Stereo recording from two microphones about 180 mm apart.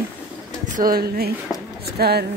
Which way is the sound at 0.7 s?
55° right (ahead or behind).